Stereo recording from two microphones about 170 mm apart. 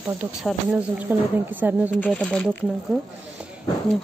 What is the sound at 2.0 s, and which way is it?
Speech, 5° left (ahead or behind).